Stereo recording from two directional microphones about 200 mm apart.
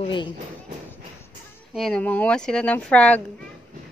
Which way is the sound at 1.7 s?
Centre (ahead or behind).